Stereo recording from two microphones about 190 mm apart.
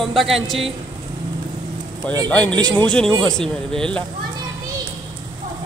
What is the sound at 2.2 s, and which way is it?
Speech, 5° left (ahead or behind).